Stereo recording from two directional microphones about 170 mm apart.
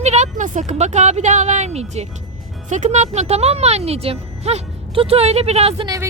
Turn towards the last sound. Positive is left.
turn(degrees=-25)  # may be behind; listen again after turning